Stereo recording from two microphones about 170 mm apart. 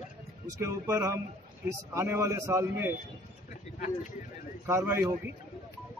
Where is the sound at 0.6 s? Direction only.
15° right (ahead or behind).